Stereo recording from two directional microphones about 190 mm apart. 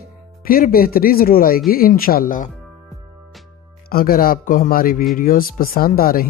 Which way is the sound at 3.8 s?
50° left (ahead or behind).